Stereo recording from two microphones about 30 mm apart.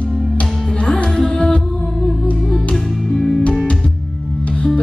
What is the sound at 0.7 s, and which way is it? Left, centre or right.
Music, left.